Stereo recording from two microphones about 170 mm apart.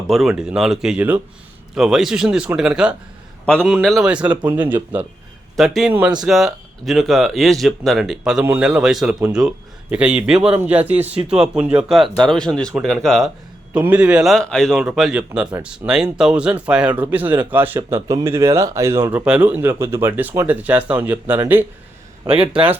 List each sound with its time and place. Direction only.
0.1 s speech: centre (ahead or behind); by 18.9 s 20° right (ahead or behind)
19.0 s speech: 5° right (ahead or behind)
22.2 s a man's voice: 30° right (ahead or behind)